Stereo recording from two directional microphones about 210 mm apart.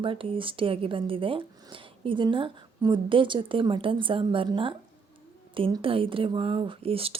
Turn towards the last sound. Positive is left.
turn(degrees=-25)  # may be behind; listen again after turning